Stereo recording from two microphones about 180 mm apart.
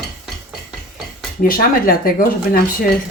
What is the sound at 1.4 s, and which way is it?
Speech, 55° left (ahead or behind).